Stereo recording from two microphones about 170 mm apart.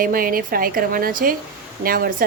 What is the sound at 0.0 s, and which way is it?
A woman's voice, 60° right (ahead or behind).